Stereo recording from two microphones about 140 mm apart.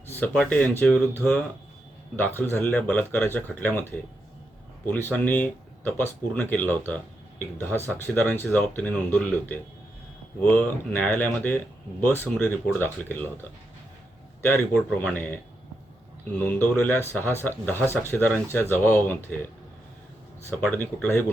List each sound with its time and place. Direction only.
0.1 s speech: 10° left (ahead or behind)
14.4 s speech: 10° left (ahead or behind)
16.7 s speech: 10° left (ahead or behind)
20.5 s speech: 15° left (ahead or behind)